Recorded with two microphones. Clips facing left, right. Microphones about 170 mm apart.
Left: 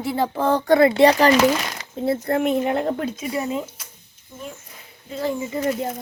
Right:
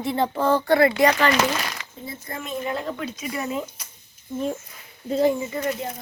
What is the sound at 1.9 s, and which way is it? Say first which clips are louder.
Speech: left 14 dB; 65° left (ahead or behind).